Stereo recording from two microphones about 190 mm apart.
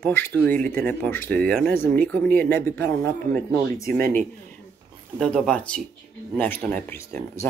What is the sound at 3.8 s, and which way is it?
Speech, 50° right (ahead or behind).